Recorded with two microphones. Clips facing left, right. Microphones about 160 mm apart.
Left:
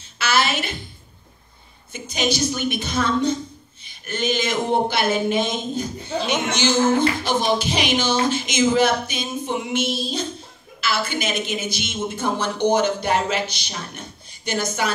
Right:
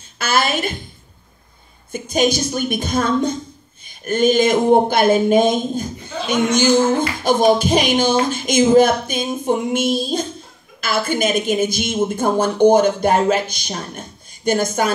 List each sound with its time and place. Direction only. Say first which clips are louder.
0.2 s music: right 3 dB; 50° right (ahead or behind)
1.9 s speech: right 6 dB; 50° right (ahead or behind)